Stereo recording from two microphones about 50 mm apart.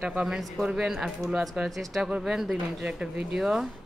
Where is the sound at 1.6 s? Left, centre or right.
Centre.